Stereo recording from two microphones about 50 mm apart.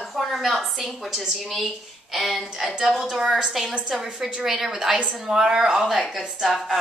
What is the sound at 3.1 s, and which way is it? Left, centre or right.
A woman's voice, centre.